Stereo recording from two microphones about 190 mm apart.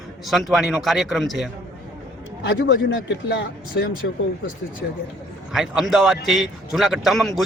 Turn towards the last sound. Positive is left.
turn(degrees=0)  # may be behind; listen again after turning